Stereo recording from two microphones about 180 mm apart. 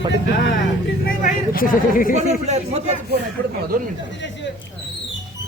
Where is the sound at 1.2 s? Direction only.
50° left (ahead or behind).